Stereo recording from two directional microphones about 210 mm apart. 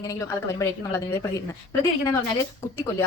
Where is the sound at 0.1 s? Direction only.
15° left (ahead or behind).